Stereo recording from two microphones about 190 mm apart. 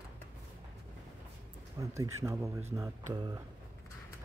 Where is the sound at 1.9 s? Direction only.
15° right (ahead or behind).